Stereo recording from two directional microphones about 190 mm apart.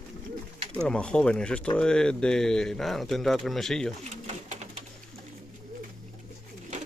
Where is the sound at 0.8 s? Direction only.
5° left (ahead or behind).